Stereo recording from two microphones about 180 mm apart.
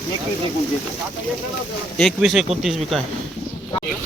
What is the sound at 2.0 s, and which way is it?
Speech, centre (ahead or behind).